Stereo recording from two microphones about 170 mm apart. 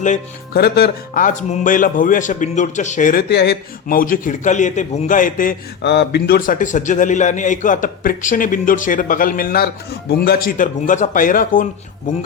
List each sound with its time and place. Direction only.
0.5 s a man's voice: 65° left (ahead or behind)
3.2 s a man's voice: 75° left (ahead or behind); by 5.5 s 50° left (ahead or behind)
5.8 s a man's voice: 80° left; by 12.1 s 50° left (ahead or behind)